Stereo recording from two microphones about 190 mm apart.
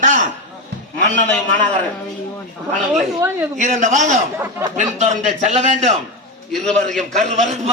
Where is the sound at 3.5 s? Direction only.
40° right (ahead or behind).